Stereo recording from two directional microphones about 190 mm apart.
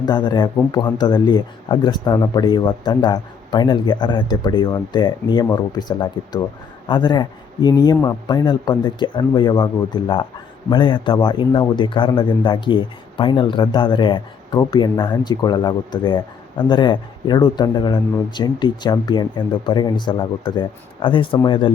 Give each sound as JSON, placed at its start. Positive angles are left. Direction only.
{"t": 0.0, "sound": "speech", "side_deg": 20}